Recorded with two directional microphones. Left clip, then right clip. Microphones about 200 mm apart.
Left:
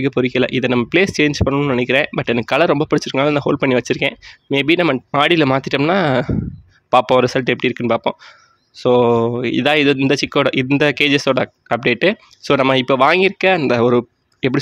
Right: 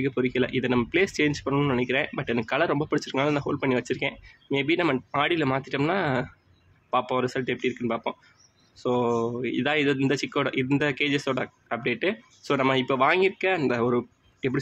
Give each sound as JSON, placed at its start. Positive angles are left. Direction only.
{"t": 0.0, "sound": "speech", "side_deg": 40}